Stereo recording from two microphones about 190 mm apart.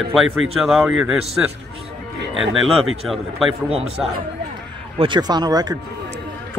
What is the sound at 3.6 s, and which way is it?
Speech, 30° right (ahead or behind).